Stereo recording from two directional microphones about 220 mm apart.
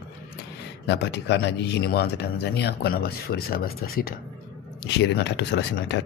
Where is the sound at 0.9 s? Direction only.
50° left (ahead or behind).